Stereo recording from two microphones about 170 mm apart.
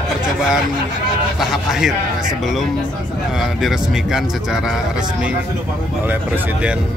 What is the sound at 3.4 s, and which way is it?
Speech, 5° right (ahead or behind).